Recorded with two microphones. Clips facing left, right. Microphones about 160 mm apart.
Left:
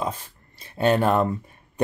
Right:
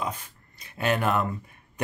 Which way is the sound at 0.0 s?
30° left (ahead or behind).